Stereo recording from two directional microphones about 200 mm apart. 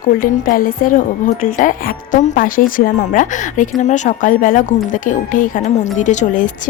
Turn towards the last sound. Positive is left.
turn(degrees=40)  # may be behind; listen again after turning